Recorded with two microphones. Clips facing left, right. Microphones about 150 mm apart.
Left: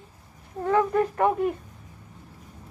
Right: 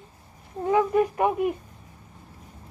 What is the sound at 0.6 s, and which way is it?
Speech, 15° right (ahead or behind).